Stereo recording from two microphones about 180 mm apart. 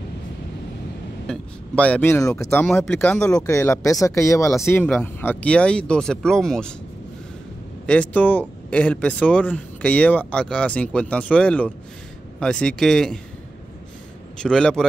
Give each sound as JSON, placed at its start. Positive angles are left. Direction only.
{"t": 1.2, "sound": "speech", "side_deg": 5}
{"t": 3.3, "sound": "speech", "side_deg": 15}
{"t": 7.8, "sound": "speech", "side_deg": 5}
{"t": 14.4, "sound": "speech", "side_deg": 5}